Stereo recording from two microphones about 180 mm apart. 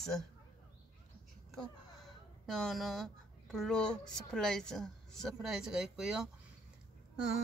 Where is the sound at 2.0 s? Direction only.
Centre (ahead or behind).